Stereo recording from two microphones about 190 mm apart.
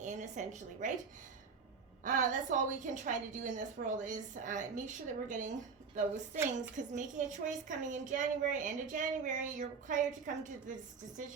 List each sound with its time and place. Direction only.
0.0 s a woman's voice: 40° right (ahead or behind)
2.0 s a woman's voice: 40° right (ahead or behind)